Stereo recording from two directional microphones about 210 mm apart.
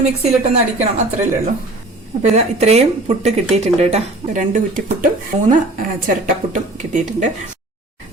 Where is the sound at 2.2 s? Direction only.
30° right (ahead or behind).